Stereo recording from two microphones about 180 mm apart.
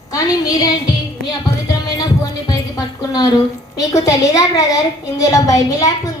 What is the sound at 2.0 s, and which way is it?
Music, 20° left (ahead or behind).